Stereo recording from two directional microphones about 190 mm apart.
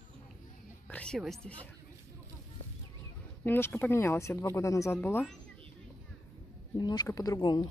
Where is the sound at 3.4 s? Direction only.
10° left (ahead or behind).